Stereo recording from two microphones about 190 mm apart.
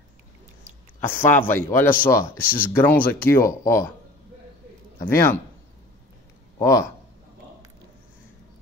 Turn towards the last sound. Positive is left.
turn(degrees=15)  # may be behind; listen again after turning